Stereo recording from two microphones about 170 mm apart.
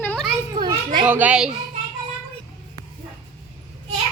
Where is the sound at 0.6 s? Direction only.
25° right (ahead or behind).